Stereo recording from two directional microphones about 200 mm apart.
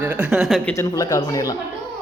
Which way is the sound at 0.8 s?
15° left (ahead or behind).